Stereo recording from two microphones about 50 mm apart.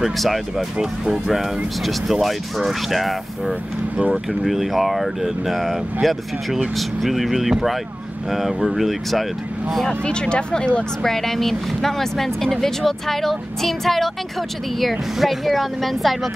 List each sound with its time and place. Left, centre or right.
0.0 s speech: centre
9.8 s speech: centre
11.0 s speech: centre